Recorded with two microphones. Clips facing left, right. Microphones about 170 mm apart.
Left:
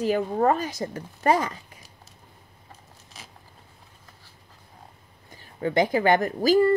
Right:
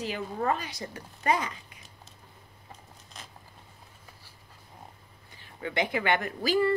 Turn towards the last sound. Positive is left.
turn(degrees=40)  # may be behind; listen again after turning